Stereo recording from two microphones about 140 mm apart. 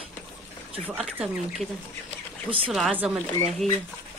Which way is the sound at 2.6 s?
Centre (ahead or behind).